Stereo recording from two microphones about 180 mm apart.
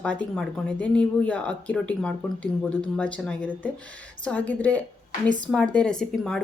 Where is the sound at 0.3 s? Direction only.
5° left (ahead or behind).